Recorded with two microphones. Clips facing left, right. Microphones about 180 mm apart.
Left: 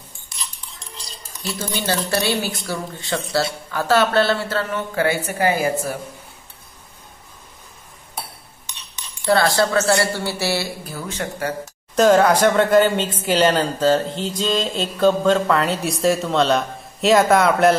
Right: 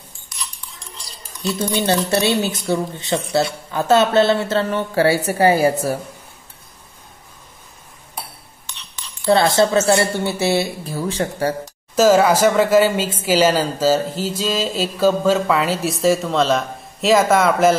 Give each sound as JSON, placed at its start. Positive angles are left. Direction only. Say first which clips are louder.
{"t": 1.7, "sound": "speech", "louder": "right 4 dB", "side_deg": -25}
{"t": 9.2, "sound": "speech", "louder": "right 3 dB", "side_deg": -20}
{"t": 11.9, "sound": "speech", "louder": "right 1 dB", "side_deg": -5}